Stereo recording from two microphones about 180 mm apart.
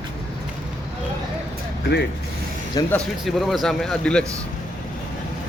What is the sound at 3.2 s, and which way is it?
Speech, centre (ahead or behind).